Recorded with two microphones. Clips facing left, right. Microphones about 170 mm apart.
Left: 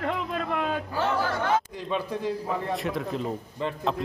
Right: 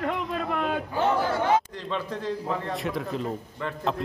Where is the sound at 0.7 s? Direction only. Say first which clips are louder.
Right 2 dB; 15° right (ahead or behind).